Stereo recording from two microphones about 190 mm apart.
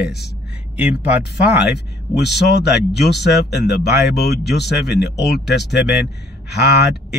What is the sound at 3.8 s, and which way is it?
Speech, 60° left (ahead or behind).